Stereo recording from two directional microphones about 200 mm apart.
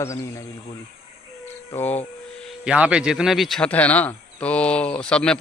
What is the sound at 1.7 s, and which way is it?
Speech, 10° left (ahead or behind).